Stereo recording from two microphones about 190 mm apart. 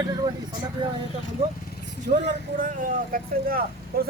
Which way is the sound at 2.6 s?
45° right (ahead or behind).